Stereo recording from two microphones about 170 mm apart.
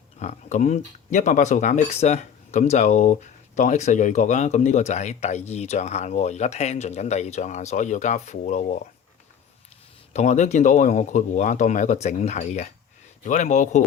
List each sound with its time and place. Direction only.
0.2 s speech: 45° left (ahead or behind)
10.1 s speech: 45° left (ahead or behind)